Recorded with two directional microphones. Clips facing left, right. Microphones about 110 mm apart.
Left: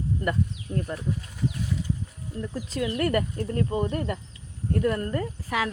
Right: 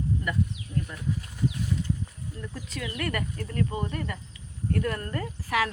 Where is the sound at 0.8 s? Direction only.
40° left (ahead or behind).